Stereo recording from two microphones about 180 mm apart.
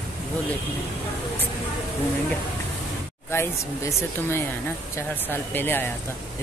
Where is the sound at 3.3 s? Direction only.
15° left (ahead or behind).